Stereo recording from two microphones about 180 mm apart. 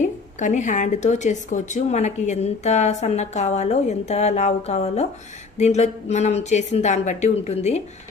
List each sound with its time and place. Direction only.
0.0 s speech: 40° left (ahead or behind)